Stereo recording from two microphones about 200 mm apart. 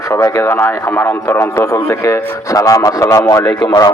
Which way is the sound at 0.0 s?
15° left (ahead or behind).